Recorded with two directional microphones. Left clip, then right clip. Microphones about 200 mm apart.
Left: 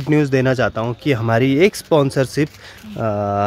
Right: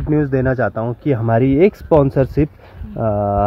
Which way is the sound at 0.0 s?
20° left (ahead or behind).